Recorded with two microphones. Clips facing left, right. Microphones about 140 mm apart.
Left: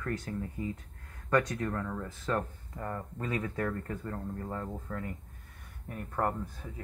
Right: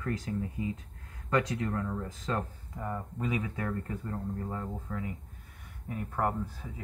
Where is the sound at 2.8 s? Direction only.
5° right (ahead or behind).